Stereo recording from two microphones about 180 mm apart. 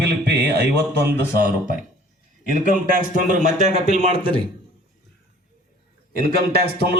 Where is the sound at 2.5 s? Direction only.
45° right (ahead or behind).